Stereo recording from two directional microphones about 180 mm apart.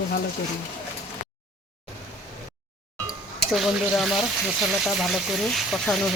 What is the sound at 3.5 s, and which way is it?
Speech, 5° right (ahead or behind).